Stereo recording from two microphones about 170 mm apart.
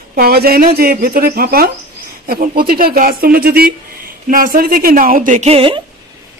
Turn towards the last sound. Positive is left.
turn(degrees=-35)  # may be behind; listen again after turning